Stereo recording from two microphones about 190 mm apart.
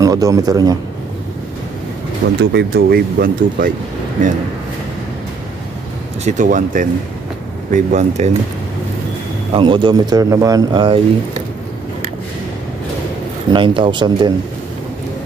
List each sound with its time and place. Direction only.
0.0 s speech: 15° right (ahead or behind)
2.5 s speech: 55° right (ahead or behind)
6.2 s speech: 40° right (ahead or behind)
9.5 s speech: 25° right (ahead or behind)
13.5 s speech: 25° right (ahead or behind)